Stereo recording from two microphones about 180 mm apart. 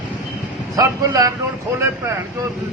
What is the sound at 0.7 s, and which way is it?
Speech, 20° right (ahead or behind).